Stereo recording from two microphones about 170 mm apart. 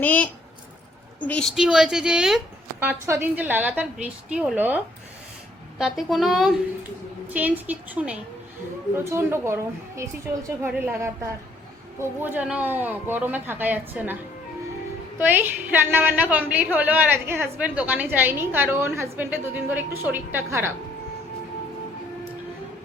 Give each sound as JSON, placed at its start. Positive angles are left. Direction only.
{"t": 0.0, "sound": "a woman's voice", "side_deg": 10}
{"t": 5.8, "sound": "a woman's voice", "side_deg": 0}
{"t": 15.2, "sound": "a woman's voice", "side_deg": -10}